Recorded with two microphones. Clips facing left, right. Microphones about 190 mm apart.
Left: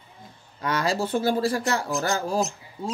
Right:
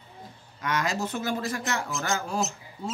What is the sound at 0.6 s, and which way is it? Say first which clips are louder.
Speech: left 3 dB; 35° left (ahead or behind).